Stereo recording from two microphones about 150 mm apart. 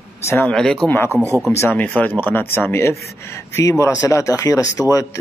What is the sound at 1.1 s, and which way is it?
Speech, 20° right (ahead or behind).